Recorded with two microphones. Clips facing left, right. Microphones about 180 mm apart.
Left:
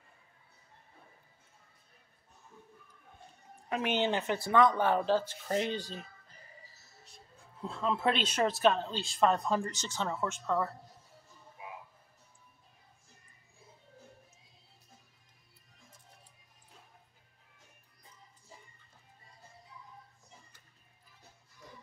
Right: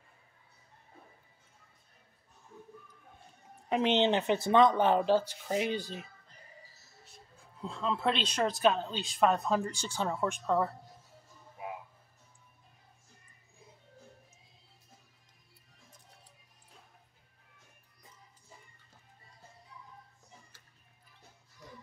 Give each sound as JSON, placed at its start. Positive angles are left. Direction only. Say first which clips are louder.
{"t": 3.6, "sound": "speech", "louder": "right 4 dB", "side_deg": -20}
{"t": 7.6, "sound": "speech", "louder": "left 1 dB", "side_deg": 5}